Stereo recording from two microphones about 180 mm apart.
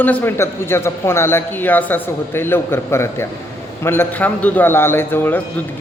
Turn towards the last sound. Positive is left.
turn(degrees=10)  # may be behind; listen again after turning